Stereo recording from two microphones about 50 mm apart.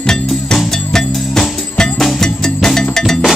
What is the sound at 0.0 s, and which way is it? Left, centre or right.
Music, centre.